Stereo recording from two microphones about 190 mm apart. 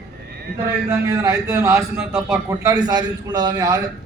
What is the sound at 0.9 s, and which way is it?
A man's voice, 15° right (ahead or behind).